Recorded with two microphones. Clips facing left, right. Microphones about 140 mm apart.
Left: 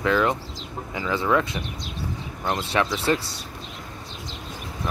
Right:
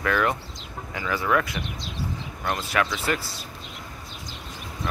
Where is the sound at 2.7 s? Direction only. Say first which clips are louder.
Left 3 dB; 30° left (ahead or behind).